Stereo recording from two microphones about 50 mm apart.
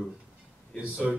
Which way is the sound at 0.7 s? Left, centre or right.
Right.